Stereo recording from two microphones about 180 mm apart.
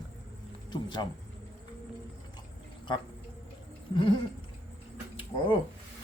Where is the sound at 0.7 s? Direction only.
25° left (ahead or behind).